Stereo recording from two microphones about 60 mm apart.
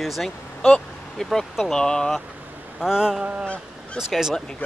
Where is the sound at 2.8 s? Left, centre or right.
Centre.